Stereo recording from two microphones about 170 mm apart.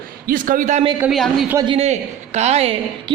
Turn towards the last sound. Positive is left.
turn(degrees=-35)  # may be behind; listen again after turning